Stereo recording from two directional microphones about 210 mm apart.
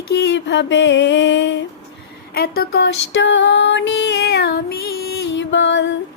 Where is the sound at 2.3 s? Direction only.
45° left (ahead or behind).